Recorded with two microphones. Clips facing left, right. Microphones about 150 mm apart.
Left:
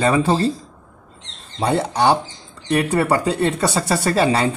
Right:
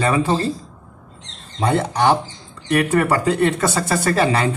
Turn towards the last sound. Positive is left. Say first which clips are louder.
# even
turn(degrees=30)  # may be behind; listen again after turning